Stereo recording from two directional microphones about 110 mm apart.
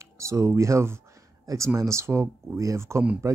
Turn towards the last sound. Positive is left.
turn(degrees=-25)  # may be behind; listen again after turning